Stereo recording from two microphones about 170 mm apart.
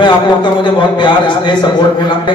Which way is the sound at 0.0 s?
25° left (ahead or behind).